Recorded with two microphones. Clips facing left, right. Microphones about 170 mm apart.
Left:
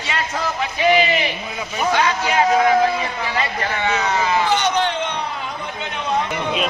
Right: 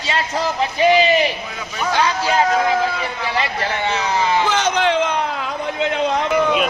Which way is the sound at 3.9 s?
30° right (ahead or behind).